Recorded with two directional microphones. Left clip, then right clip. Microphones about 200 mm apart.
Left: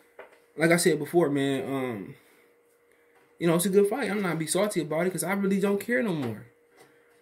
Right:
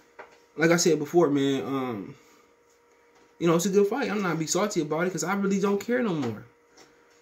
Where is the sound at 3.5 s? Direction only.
10° left (ahead or behind).